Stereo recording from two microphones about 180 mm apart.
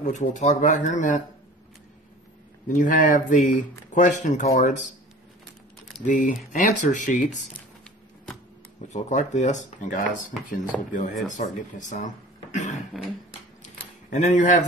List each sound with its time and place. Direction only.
0.0 s speech: 45° left (ahead or behind)
2.7 s speech: 45° left (ahead or behind)
6.0 s speech: 45° left (ahead or behind)
8.8 s speech: 40° left (ahead or behind)
12.9 s a sound: centre (ahead or behind)
14.1 s speech: 45° left (ahead or behind)